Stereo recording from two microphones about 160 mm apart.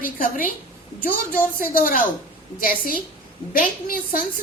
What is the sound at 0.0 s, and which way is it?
Speech, 60° left (ahead or behind).